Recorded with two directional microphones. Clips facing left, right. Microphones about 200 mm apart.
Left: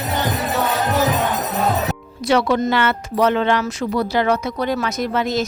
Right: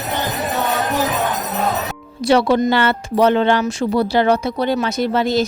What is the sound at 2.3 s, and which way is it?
Speech, 30° right (ahead or behind).